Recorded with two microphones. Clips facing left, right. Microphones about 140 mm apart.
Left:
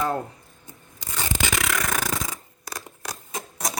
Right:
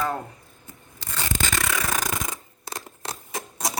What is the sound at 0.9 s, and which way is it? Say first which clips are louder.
Rub: left 1 dB; 15° left (ahead or behind).